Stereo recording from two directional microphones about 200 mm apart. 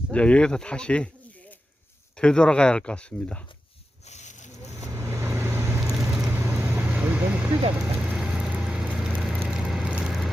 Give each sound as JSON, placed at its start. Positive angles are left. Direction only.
{"t": 0.1, "sound": "speech", "side_deg": 5}
{"t": 4.0, "sound": "a sound", "side_deg": 35}
{"t": 4.8, "sound": "vehicle", "side_deg": -15}
{"t": 6.1, "sound": "vehicle", "side_deg": -5}